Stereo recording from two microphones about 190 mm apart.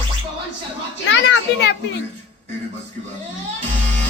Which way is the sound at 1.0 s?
70° left (ahead or behind).